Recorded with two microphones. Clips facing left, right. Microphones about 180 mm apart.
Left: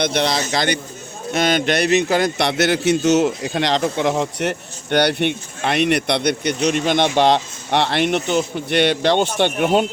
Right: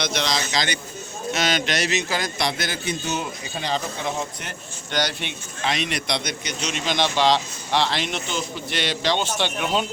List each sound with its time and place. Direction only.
0.0 s a man's voice: 55° left (ahead or behind)